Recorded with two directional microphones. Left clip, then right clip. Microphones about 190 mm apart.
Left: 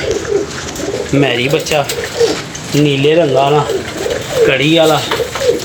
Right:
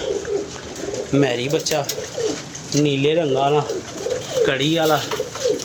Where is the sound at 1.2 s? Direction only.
15° right (ahead or behind).